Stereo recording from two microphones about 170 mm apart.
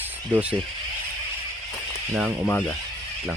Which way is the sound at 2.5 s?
10° left (ahead or behind).